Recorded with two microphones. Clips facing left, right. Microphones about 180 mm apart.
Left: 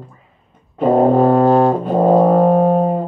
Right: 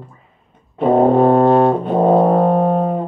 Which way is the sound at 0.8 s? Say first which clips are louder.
Even; 40° left (ahead or behind).